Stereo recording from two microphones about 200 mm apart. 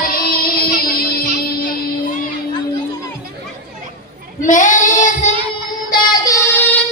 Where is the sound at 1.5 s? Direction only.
45° left (ahead or behind).